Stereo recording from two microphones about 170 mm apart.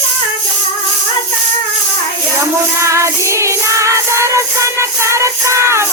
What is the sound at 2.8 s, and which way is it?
Music, 15° right (ahead or behind).